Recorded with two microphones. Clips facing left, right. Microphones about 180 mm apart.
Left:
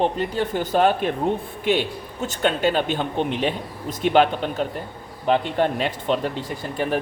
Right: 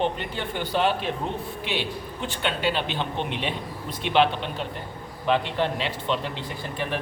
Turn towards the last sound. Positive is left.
turn(degrees=45)  # may be behind; listen again after turning